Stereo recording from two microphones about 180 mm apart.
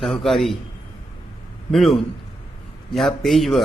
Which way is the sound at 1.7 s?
Centre (ahead or behind).